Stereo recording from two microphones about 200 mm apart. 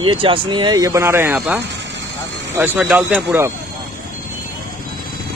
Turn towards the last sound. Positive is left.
turn(degrees=-10)  # may be behind; listen again after turning